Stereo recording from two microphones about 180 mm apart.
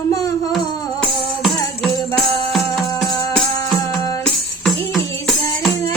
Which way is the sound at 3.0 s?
Centre (ahead or behind).